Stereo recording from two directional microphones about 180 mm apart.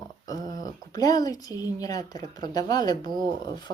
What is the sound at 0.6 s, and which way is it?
Speech, 20° left (ahead or behind).